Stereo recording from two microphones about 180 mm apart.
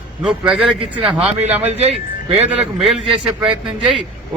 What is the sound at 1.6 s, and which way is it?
Speech, 35° right (ahead or behind).